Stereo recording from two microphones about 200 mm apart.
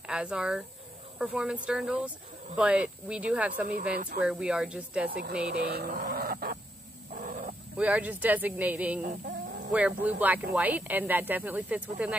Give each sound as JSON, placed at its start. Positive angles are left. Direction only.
{"t": 0.0, "sound": "speech", "side_deg": -5}
{"t": 3.9, "sound": "speech", "side_deg": -50}
{"t": 4.2, "sound": "speech", "side_deg": -5}
{"t": 5.1, "sound": "speech", "side_deg": -50}
{"t": 7.1, "sound": "wild animals", "side_deg": -40}
{"t": 7.7, "sound": "speech", "side_deg": -5}